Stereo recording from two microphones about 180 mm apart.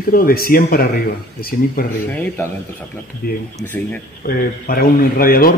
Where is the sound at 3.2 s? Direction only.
55° left (ahead or behind).